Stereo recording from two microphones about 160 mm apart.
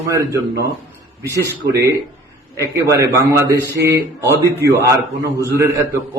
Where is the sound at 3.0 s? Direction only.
20° right (ahead or behind).